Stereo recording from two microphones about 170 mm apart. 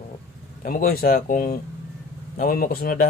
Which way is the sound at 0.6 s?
55° left (ahead or behind).